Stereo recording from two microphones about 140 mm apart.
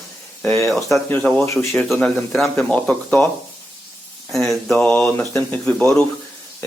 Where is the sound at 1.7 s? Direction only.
Centre (ahead or behind).